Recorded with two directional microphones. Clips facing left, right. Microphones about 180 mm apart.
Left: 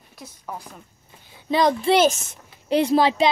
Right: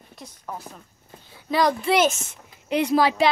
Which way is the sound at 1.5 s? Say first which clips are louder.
Left 2 dB; 25° left (ahead or behind).